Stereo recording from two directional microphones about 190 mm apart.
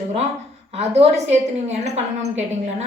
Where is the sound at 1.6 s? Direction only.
35° right (ahead or behind).